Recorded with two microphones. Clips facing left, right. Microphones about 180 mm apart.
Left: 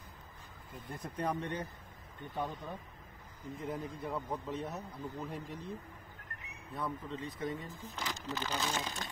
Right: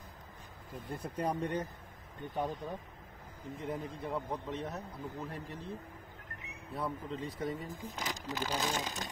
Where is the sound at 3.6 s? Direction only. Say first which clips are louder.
Right 1 dB; centre (ahead or behind); by 5.7 s 15° left (ahead or behind).